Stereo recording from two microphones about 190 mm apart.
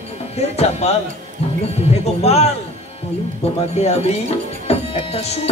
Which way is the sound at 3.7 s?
35° left (ahead or behind).